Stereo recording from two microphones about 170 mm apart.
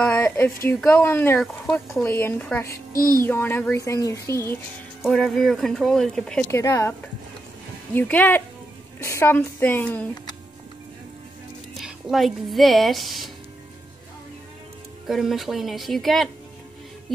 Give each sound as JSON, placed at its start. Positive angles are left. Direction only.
{"t": 0.0, "sound": "a woman's voice", "side_deg": 10}
{"t": 5.0, "sound": "speech", "side_deg": 0}
{"t": 6.4, "sound": "speech", "side_deg": 15}
{"t": 11.8, "sound": "speech", "side_deg": 0}
{"t": 15.0, "sound": "speech", "side_deg": 0}